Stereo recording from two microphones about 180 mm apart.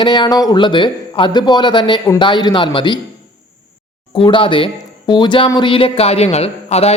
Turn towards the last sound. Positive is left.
turn(degrees=35)  # may be behind; listen again after turning